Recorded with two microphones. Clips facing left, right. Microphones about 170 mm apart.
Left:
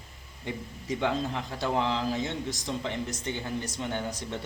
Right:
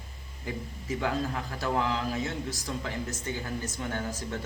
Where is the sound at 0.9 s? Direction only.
25° left (ahead or behind).